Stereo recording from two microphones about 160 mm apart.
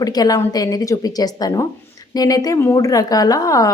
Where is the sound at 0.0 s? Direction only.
25° left (ahead or behind).